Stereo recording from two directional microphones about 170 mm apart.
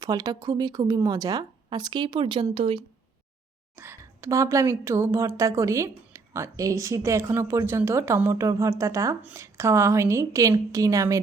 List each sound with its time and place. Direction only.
0.0 s speech: 20° right (ahead or behind)
3.8 s a woman's voice: 15° right (ahead or behind)